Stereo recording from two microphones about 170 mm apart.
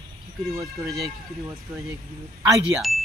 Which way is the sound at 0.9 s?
Centre (ahead or behind).